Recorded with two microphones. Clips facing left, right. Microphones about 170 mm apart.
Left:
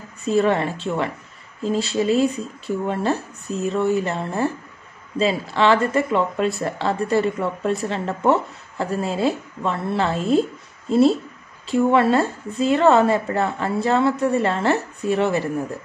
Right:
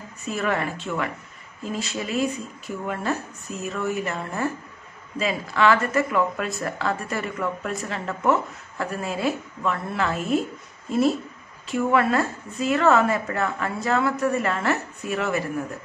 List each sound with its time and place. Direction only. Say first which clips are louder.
0.2 s speech: left 7 dB; 30° left (ahead or behind)